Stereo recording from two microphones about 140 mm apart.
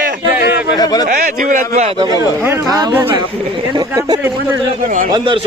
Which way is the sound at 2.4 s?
15° right (ahead or behind).